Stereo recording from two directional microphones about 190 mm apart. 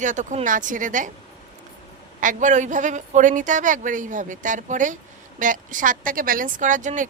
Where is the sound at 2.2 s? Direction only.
40° right (ahead or behind).